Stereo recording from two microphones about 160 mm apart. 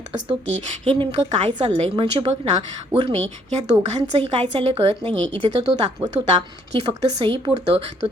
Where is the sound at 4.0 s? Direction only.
35° right (ahead or behind).